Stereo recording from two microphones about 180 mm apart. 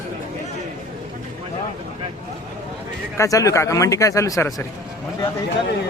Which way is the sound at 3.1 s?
20° left (ahead or behind).